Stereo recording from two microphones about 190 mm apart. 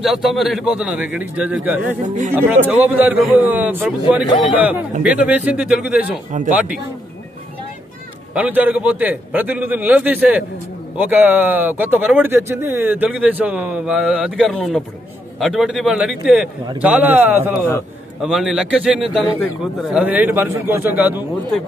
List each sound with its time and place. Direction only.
0.0 s speech: centre (ahead or behind)
2.0 s speech: 40° right (ahead or behind)
2.3 s speech: 10° right (ahead or behind)
8.4 s a man's voice: 10° right (ahead or behind)